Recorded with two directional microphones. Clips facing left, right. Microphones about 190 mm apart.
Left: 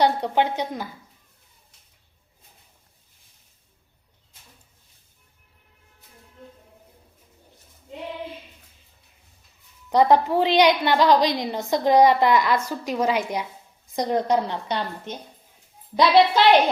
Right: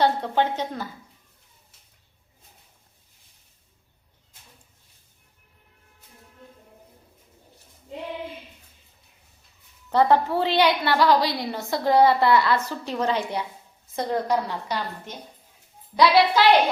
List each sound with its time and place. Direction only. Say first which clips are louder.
0.0 s a woman's voice: left 1 dB; 15° left (ahead or behind)
9.9 s a woman's voice: left 2 dB; 15° left (ahead or behind)